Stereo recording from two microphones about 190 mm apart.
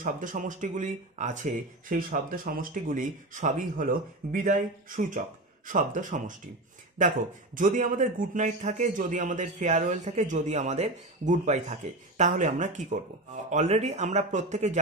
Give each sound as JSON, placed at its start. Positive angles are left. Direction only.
{"t": 0.0, "sound": "speech", "side_deg": -45}
{"t": 7.5, "sound": "a man's voice", "side_deg": -45}